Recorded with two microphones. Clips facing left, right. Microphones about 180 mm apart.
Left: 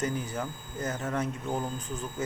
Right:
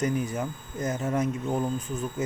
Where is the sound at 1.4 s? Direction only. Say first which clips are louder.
Right 4 dB; 5° left (ahead or behind).